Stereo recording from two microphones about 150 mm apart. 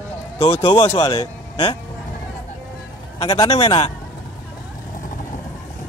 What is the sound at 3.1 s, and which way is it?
Speech, 35° left (ahead or behind).